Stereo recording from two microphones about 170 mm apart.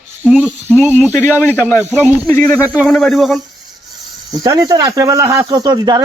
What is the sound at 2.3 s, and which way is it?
Speech, 10° left (ahead or behind).